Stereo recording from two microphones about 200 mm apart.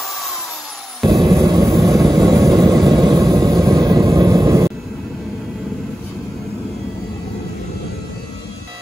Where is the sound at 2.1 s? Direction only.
20° right (ahead or behind).